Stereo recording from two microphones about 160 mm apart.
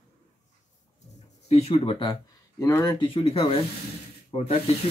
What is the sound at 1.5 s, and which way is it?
Speech, 40° left (ahead or behind).